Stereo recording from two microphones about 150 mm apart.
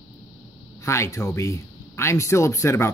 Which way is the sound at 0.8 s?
20° left (ahead or behind).